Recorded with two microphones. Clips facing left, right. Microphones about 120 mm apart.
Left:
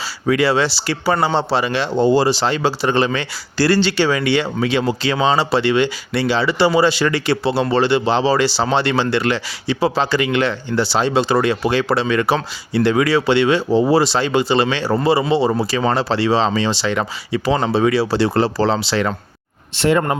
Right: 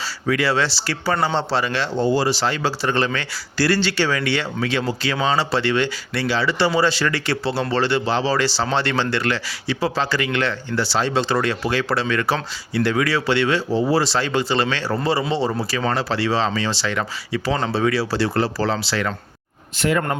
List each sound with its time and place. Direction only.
0.3 s speech: 20° left (ahead or behind)
15.9 s speech: 25° left (ahead or behind)